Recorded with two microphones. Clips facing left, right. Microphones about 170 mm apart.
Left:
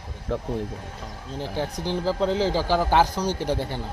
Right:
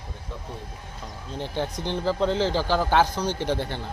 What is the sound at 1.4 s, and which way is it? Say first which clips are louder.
A man's voice: even; 5° left (ahead or behind).